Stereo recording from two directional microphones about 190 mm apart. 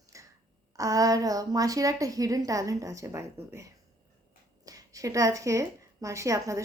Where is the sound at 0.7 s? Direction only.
20° right (ahead or behind).